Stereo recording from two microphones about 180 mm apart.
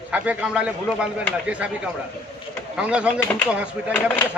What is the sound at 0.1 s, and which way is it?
A man's voice, 5° right (ahead or behind).